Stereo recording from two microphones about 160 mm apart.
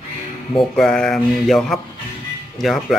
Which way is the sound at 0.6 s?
5° left (ahead or behind).